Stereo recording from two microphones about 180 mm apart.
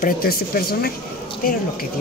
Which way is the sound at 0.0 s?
55° left (ahead or behind).